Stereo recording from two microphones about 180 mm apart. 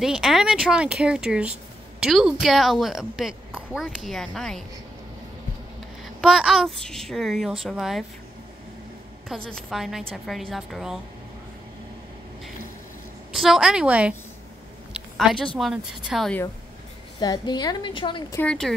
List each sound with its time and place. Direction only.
0.0 s a woman's voice: centre (ahead or behind)
6.2 s a woman's voice: 5° right (ahead or behind)
9.3 s a woman's voice: centre (ahead or behind)
13.3 s a woman's voice: centre (ahead or behind)
17.2 s a woman's voice: 25° left (ahead or behind)
18.4 s a woman's voice: 5° left (ahead or behind)